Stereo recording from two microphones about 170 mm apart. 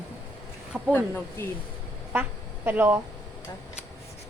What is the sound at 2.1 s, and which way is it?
Speech, 10° right (ahead or behind).